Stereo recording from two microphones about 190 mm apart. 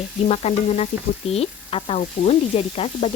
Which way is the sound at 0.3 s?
35° left (ahead or behind).